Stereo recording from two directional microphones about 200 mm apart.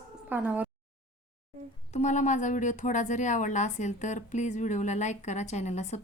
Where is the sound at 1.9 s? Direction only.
35° left (ahead or behind).